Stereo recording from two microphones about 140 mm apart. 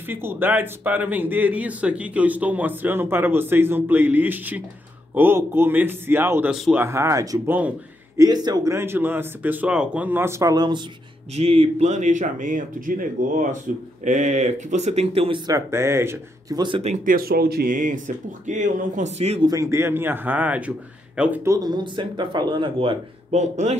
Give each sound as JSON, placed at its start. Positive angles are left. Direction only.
{"t": 0.1, "sound": "speech", "side_deg": -15}
{"t": 6.5, "sound": "speech", "side_deg": -5}
{"t": 6.8, "sound": "speech", "side_deg": -20}
{"t": 8.2, "sound": "speech", "side_deg": -30}
{"t": 11.3, "sound": "speech", "side_deg": -45}
{"t": 14.0, "sound": "speech", "side_deg": -60}
{"t": 15.4, "sound": "speech", "side_deg": -20}
{"t": 16.5, "sound": "speech", "side_deg": -35}
{"t": 16.8, "sound": "speech", "side_deg": -65}
{"t": 19.4, "sound": "speech", "side_deg": -25}
{"t": 21.5, "sound": "speech", "side_deg": -30}
{"t": 23.3, "sound": "speech", "side_deg": -55}